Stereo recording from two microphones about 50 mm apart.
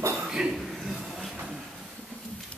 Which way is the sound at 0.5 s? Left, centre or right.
Centre.